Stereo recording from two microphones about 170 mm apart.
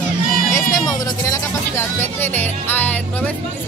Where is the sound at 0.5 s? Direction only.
20° left (ahead or behind).